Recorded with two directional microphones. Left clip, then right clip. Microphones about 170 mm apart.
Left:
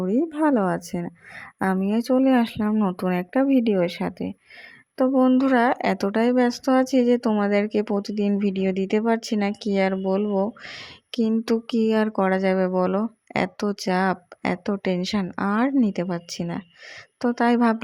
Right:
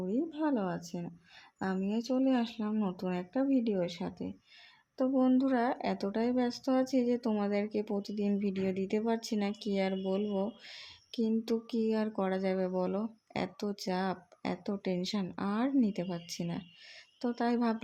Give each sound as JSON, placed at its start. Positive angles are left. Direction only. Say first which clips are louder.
{"t": 0.0, "sound": "a woman's voice", "louder": "left 12 dB", "side_deg": 55}